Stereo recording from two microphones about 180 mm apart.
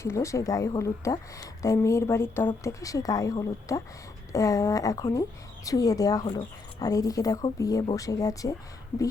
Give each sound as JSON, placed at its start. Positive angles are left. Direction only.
{"t": 0.0, "sound": "a woman's voice", "side_deg": 15}